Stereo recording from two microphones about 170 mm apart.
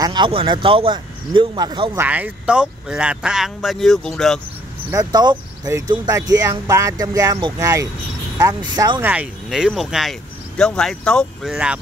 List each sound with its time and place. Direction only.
0.0 s speech: 25° right (ahead or behind)
2.0 s speech: 10° right (ahead or behind)
4.9 s speech: 25° right (ahead or behind)
9.0 s speech: 10° right (ahead or behind)